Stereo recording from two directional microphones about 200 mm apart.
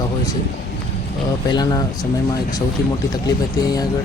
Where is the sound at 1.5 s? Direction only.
20° left (ahead or behind).